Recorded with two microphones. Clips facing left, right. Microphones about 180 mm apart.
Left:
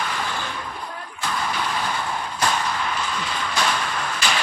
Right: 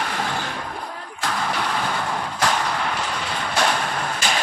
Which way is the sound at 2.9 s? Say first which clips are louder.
Right 1 dB; 65° right (ahead or behind).